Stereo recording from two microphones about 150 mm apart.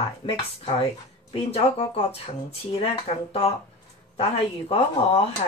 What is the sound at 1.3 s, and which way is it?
Speech, 40° left (ahead or behind).